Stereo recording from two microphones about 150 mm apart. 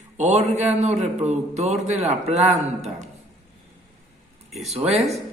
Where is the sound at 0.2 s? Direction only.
50° right (ahead or behind).